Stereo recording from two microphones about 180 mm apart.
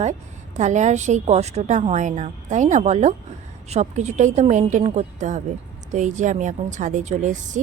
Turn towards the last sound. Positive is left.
turn(degrees=-45)  # may be behind; listen again after turning